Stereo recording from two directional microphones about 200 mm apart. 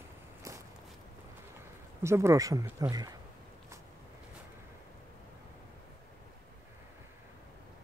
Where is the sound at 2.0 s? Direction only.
15° right (ahead or behind).